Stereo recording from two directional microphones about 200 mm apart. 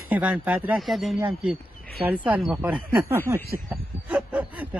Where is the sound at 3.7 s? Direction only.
5° right (ahead or behind).